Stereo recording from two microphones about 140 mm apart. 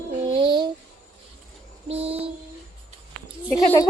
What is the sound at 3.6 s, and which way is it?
Speech, 25° left (ahead or behind).